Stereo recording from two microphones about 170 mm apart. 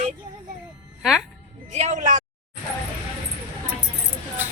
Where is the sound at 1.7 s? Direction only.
45° right (ahead or behind).